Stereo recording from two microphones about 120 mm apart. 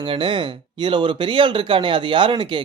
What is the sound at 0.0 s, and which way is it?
Speech, 45° right (ahead or behind).